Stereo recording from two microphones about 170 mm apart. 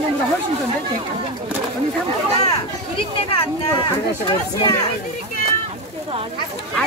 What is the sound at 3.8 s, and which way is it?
Speech, 30° left (ahead or behind).